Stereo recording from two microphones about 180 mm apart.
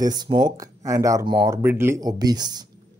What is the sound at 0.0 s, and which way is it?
Speech, 25° right (ahead or behind).